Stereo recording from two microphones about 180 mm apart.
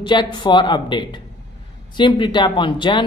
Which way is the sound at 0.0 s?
25° left (ahead or behind).